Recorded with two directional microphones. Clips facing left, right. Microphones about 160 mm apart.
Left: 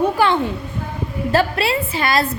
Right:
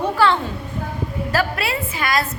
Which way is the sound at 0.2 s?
15° left (ahead or behind).